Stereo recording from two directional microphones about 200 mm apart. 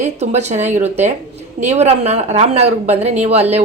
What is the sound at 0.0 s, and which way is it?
A woman's voice, 35° right (ahead or behind).